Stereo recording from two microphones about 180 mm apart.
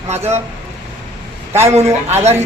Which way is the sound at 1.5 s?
15° right (ahead or behind).